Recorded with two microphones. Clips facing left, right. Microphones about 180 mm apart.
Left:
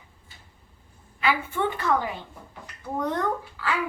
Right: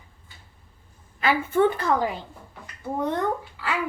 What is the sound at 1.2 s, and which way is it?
Speech, 45° right (ahead or behind).